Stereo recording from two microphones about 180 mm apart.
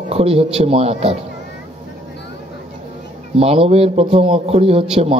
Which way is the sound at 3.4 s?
35° right (ahead or behind).